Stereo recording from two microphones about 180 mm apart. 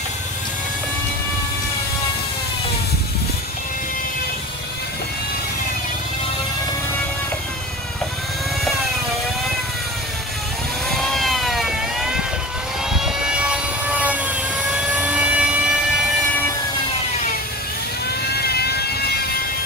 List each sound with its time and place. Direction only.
10.9 s vehicle: centre (ahead or behind)
15.0 s siren: 5° right (ahead or behind)
18.2 s vehicle: 60° left (ahead or behind)